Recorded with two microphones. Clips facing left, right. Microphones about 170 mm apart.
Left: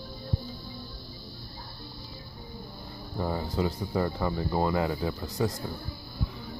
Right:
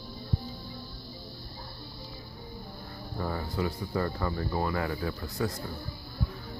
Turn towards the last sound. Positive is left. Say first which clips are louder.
# left 3 dB
turn(degrees=20)  # may be behind; listen again after turning